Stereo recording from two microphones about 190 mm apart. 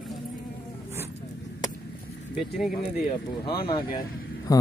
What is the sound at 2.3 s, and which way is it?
Speech, centre (ahead or behind).